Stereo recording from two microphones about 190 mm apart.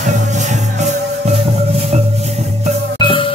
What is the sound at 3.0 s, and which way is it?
Music, 25° left (ahead or behind).